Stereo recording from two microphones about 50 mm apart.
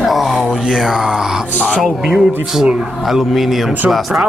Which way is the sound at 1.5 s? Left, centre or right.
Left.